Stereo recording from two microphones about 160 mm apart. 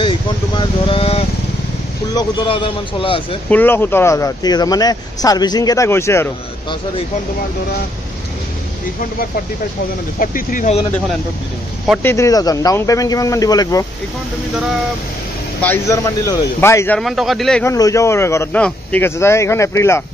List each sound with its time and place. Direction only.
0.6 s a man's voice: 35° left (ahead or behind)
3.4 s speech: 10° left (ahead or behind)
10.1 s speech: 60° left (ahead or behind)
12.0 s speech: 15° left (ahead or behind)
15.6 s a man's voice: 15° left (ahead or behind)
17.0 s a man's voice: centre (ahead or behind)
17.6 s a man's voice: 20° left (ahead or behind)